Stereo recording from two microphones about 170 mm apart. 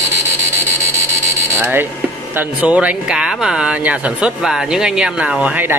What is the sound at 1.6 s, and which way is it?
Speech, 10° right (ahead or behind).